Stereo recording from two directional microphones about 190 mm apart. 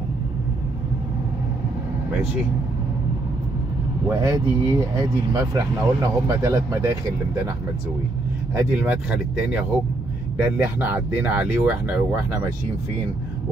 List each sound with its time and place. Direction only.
4.1 s speech: 15° right (ahead or behind)
8.5 s speech: 10° right (ahead or behind)